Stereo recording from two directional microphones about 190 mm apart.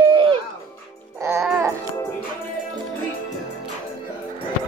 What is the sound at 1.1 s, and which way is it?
Music, 10° right (ahead or behind).